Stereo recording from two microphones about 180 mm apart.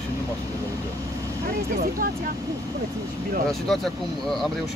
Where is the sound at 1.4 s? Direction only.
55° right (ahead or behind).